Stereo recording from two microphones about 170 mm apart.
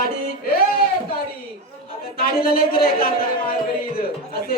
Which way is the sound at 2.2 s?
60° left (ahead or behind).